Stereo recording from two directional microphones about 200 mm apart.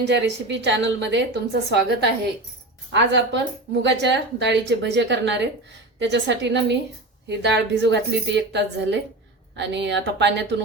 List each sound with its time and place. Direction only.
0.1 s a woman's voice: 60° right (ahead or behind)